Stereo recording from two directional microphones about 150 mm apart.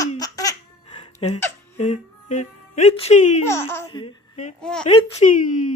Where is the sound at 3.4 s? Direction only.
15° left (ahead or behind).